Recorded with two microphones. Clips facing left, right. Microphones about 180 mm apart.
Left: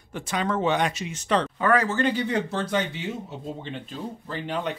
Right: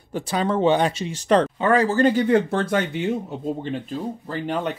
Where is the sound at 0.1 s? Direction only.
35° right (ahead or behind).